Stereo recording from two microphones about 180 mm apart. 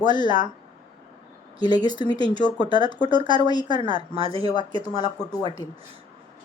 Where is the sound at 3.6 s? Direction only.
25° right (ahead or behind).